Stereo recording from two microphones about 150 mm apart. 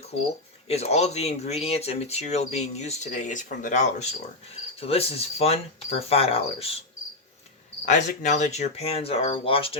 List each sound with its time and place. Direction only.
0.7 s speech: 45° left (ahead or behind)
4.8 s speech: 40° left (ahead or behind)
7.9 s speech: 55° left (ahead or behind); by 9.7 s 40° left (ahead or behind)